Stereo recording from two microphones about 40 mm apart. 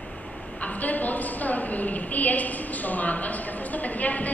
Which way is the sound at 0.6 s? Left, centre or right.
Left.